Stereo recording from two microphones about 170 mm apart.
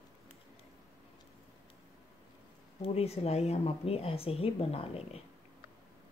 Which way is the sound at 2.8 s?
35° left (ahead or behind).